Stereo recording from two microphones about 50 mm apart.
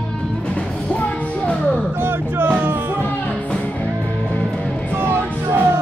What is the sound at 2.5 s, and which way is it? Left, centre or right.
Music, right.